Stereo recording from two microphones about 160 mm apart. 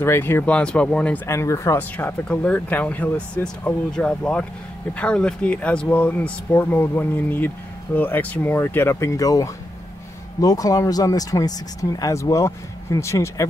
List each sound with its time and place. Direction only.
0.0 s speech: 15° left (ahead or behind)